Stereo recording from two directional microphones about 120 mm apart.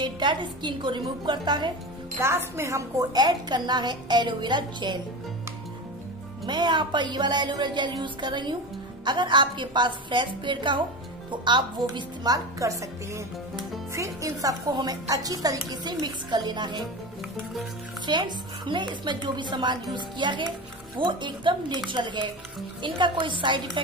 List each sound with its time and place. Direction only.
0.0 s a woman's voice: 40° right (ahead or behind)
2.1 s a woman's voice: 20° right (ahead or behind); by 5.0 s 40° right (ahead or behind)
6.4 s a woman's voice: 40° right (ahead or behind)
18.0 s a woman's voice: 40° right (ahead or behind)